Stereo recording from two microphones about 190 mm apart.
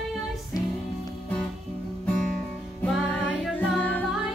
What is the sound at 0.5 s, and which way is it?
Music, 20° left (ahead or behind).